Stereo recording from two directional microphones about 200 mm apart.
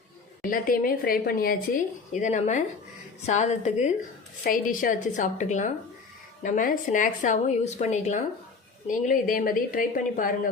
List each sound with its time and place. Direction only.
0.5 s a woman's voice: 45° left (ahead or behind)